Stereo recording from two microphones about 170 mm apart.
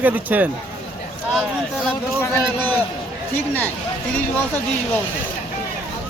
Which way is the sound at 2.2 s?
10° left (ahead or behind).